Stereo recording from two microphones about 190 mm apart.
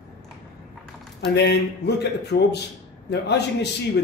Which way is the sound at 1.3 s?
60° left (ahead or behind).